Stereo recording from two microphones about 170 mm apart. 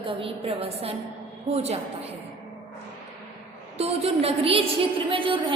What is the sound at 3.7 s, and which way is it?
A woman's voice, 35° right (ahead or behind).